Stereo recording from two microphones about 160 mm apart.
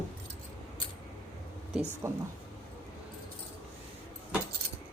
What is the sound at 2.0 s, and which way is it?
Speech, 20° right (ahead or behind).